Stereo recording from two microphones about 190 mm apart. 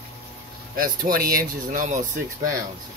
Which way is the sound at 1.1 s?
50° right (ahead or behind).